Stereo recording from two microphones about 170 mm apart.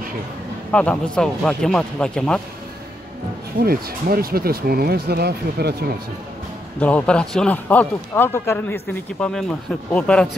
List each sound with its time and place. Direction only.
0.7 s speech: 5° left (ahead or behind)
3.5 s speech: 60° right (ahead or behind)
6.8 s a man's voice: 5° left (ahead or behind)